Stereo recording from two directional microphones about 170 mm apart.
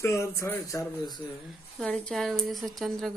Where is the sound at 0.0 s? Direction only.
15° left (ahead or behind).